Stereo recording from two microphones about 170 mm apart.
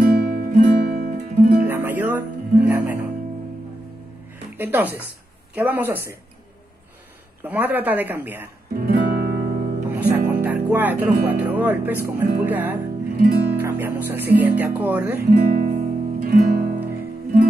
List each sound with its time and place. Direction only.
0.0 s music: 70° right (ahead or behind)
1.7 s music: 10° right (ahead or behind)
4.6 s speech: 10° right (ahead or behind)
7.4 s speech: 10° right (ahead or behind)
8.8 s music: 65° right (ahead or behind)
9.8 s music: 10° right (ahead or behind)
11.2 s speech: 10° right (ahead or behind)
13.1 s speech: 65° right (ahead or behind)
13.6 s speech: 10° right (ahead or behind)
15.3 s speech: 60° right (ahead or behind)
16.3 s music: 60° right (ahead or behind)